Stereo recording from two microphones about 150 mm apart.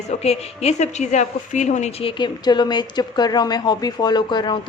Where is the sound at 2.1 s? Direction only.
30° left (ahead or behind).